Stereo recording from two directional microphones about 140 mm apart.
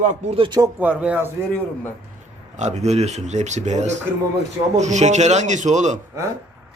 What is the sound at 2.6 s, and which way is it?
Speech, 55° right (ahead or behind).